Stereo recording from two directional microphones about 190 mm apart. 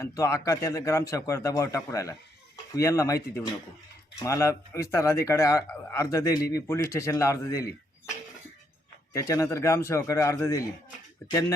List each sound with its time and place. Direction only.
0.0 s speech: 15° left (ahead or behind)
4.2 s speech: 15° left (ahead or behind)
9.1 s speech: 15° left (ahead or behind)